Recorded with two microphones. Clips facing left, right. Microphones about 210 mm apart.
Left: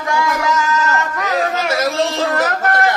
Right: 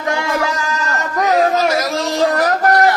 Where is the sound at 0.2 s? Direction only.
30° right (ahead or behind).